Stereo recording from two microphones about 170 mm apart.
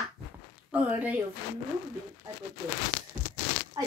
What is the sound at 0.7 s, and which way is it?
Speech, 10° right (ahead or behind).